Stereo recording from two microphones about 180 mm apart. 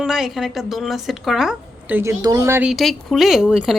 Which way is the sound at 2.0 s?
15° right (ahead or behind).